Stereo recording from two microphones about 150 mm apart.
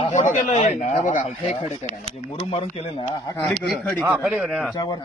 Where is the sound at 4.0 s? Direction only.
15° right (ahead or behind).